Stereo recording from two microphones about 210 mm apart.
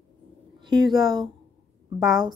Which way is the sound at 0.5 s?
20° right (ahead or behind).